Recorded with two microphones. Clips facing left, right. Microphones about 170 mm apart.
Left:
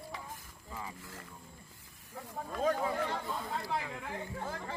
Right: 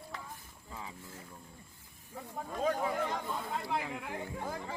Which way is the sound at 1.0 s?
90° left.